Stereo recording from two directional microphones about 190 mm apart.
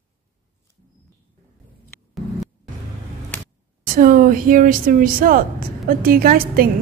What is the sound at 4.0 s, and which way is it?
Speech, 45° right (ahead or behind).